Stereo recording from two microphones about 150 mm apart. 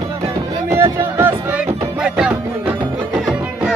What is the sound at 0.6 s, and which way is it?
Music, 15° right (ahead or behind).